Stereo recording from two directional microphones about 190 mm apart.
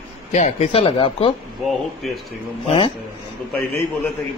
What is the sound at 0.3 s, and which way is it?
Speech, 40° left (ahead or behind).